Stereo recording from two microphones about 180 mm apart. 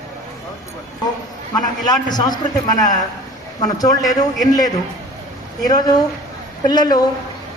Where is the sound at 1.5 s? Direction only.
20° left (ahead or behind).